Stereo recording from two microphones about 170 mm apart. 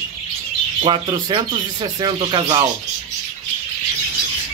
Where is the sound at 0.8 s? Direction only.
30° right (ahead or behind).